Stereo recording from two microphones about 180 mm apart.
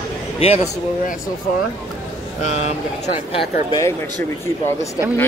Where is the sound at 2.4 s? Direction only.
35° left (ahead or behind).